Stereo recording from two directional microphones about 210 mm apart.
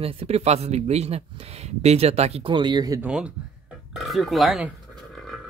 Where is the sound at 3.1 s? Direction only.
5° right (ahead or behind).